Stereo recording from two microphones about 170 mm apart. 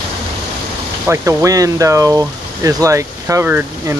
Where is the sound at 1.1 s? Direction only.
15° right (ahead or behind).